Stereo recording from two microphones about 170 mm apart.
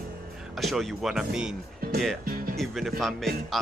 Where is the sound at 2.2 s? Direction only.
60° right (ahead or behind).